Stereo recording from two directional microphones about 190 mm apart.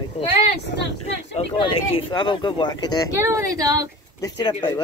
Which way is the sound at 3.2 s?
15° right (ahead or behind).